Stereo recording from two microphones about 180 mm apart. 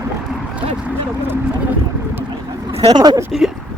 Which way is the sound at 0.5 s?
10° right (ahead or behind).